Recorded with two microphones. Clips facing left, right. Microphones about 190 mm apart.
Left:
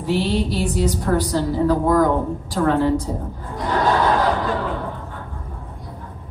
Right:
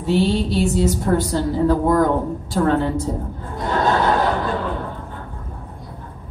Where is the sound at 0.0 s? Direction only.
25° right (ahead or behind).